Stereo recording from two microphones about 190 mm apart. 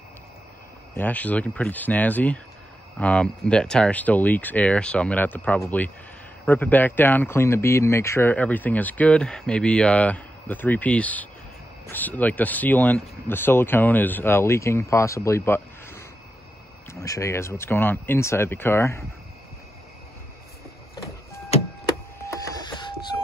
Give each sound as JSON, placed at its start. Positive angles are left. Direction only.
{"t": 0.9, "sound": "speech", "side_deg": 10}
{"t": 22.3, "sound": "printer", "side_deg": 20}